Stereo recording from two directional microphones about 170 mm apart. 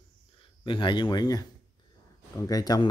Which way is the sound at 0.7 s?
30° left (ahead or behind).